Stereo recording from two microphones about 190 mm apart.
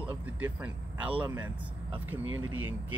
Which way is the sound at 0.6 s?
10° right (ahead or behind).